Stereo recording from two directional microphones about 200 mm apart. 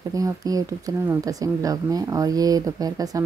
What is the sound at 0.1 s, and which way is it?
A woman's voice, 15° right (ahead or behind).